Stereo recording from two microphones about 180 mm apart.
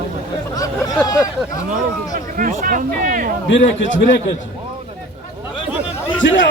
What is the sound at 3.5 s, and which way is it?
Speech, 90° left.